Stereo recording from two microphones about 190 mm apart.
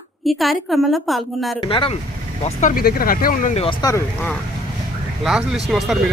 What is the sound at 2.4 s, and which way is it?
Speech, 45° left (ahead or behind).